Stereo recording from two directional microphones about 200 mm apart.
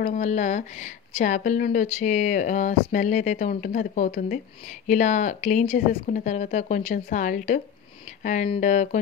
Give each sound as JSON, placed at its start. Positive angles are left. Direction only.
{"t": 0.0, "sound": "speech", "side_deg": 35}